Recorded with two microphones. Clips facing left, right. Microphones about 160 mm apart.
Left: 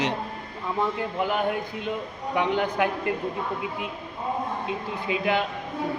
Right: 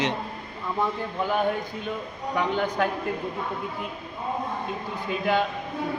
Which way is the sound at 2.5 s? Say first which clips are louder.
Left 1 dB; 15° left (ahead or behind).